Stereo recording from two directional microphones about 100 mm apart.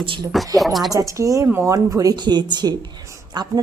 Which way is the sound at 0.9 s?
35° right (ahead or behind).